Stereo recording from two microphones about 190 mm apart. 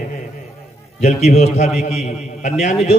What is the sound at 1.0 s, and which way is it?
A man's voice, 35° left (ahead or behind).